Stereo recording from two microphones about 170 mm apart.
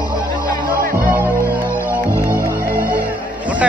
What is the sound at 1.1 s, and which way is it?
Music, 10° right (ahead or behind).